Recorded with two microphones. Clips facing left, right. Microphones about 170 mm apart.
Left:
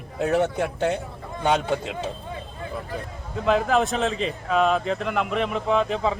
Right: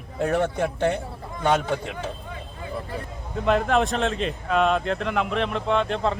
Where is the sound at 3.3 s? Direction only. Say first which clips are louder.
Even; centre (ahead or behind).